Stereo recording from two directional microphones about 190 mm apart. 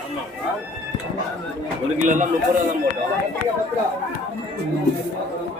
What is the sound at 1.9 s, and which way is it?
Speech, 40° right (ahead or behind).